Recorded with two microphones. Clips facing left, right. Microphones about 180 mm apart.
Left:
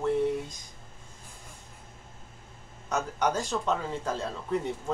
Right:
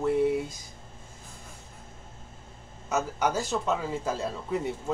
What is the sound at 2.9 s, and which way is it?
Speech, 5° right (ahead or behind).